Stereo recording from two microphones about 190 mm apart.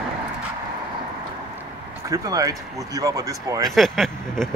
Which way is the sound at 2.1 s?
20° right (ahead or behind).